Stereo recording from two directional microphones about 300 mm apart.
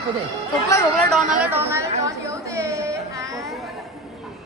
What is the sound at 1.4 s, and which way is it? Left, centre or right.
Speech, centre.